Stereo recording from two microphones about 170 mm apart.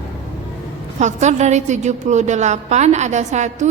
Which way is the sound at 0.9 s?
45° right (ahead or behind).